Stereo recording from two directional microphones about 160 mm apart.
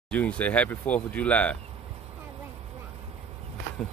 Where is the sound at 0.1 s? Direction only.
10° left (ahead or behind).